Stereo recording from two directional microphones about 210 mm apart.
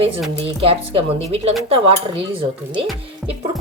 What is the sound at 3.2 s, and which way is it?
Music, centre (ahead or behind).